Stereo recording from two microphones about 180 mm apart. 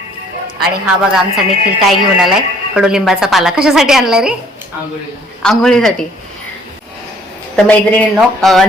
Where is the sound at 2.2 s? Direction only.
5° right (ahead or behind).